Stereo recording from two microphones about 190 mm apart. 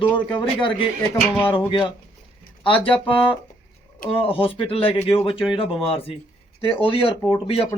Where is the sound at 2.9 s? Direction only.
25° left (ahead or behind).